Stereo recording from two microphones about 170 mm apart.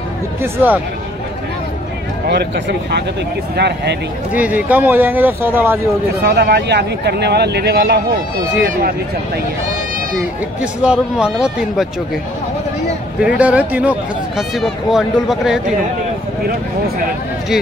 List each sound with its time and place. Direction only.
0.4 s speech: 10° right (ahead or behind)
2.2 s speech: 80° right
4.3 s speech: 10° right (ahead or behind)
6.2 s speech: 80° right
10.6 s speech: 5° right (ahead or behind)
13.4 s speech: 10° right (ahead or behind)